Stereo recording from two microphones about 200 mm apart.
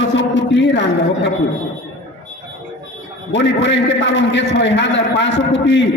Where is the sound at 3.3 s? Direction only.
65° left (ahead or behind).